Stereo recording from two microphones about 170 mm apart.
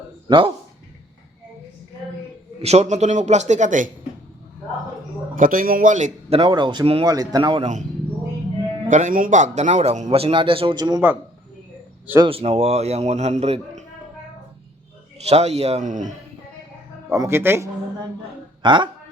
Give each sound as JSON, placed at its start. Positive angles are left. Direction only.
{"t": 0.3, "sound": "speech", "side_deg": -30}
{"t": 2.6, "sound": "a man's voice", "side_deg": -40}
{"t": 5.3, "sound": "a man's voice", "side_deg": -55}
{"t": 6.4, "sound": "speech", "side_deg": -25}
{"t": 8.9, "sound": "a man's voice", "side_deg": -45}
{"t": 12.2, "sound": "a man's voice", "side_deg": -35}
{"t": 15.3, "sound": "a man's voice", "side_deg": -40}
{"t": 17.1, "sound": "speech", "side_deg": -15}
{"t": 18.6, "sound": "speech", "side_deg": -30}